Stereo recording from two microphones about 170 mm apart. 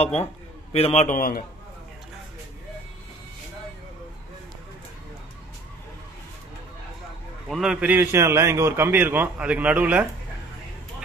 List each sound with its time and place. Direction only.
0.7 s a man's voice: 40° left (ahead or behind); by 1.4 s 55° left (ahead or behind)
7.4 s a man's voice: centre (ahead or behind)